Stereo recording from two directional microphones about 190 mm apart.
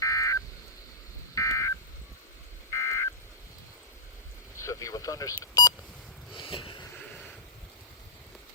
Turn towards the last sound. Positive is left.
turn(degrees=10)  # may be behind; listen again after turning